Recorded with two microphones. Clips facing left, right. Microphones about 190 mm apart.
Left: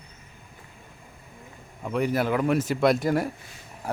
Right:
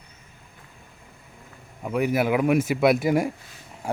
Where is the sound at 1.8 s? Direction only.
10° right (ahead or behind).